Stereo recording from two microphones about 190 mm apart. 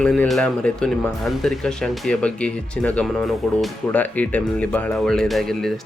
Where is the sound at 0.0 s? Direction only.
5° left (ahead or behind).